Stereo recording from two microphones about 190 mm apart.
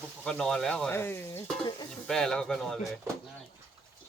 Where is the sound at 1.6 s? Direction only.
20° left (ahead or behind).